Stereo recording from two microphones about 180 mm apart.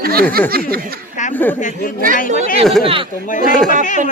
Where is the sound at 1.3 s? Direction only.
10° left (ahead or behind).